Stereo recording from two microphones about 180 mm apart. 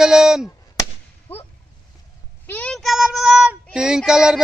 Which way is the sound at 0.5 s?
20° left (ahead or behind).